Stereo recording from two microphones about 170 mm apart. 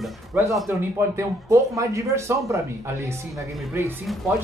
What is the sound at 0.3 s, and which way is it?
Speech, 10° right (ahead or behind).